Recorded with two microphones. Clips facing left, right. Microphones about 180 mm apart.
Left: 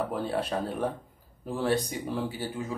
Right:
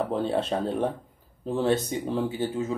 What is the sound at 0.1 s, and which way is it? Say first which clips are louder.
Speech: right 4 dB; 25° right (ahead or behind).